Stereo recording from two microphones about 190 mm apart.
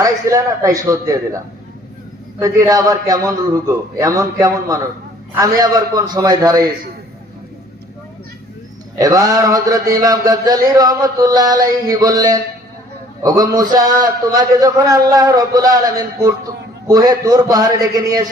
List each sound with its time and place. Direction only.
0.0 s a man's voice: 15° right (ahead or behind)
2.4 s a man's voice: 15° right (ahead or behind)
9.0 s speech: 20° right (ahead or behind)